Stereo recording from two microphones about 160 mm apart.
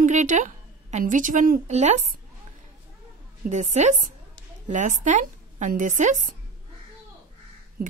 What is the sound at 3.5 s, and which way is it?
A woman's voice, 45° right (ahead or behind).